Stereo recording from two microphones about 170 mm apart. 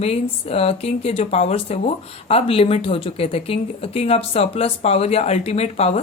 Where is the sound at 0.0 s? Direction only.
35° left (ahead or behind).